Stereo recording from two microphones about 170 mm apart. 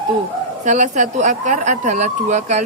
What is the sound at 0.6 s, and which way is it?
Speech, 45° right (ahead or behind).